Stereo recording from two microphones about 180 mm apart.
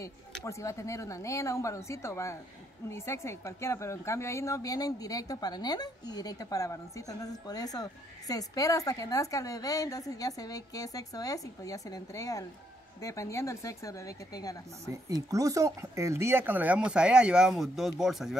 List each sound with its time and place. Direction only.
0.5 s a woman's voice: 15° left (ahead or behind)
14.9 s speech: 20° right (ahead or behind); by 18.4 s centre (ahead or behind)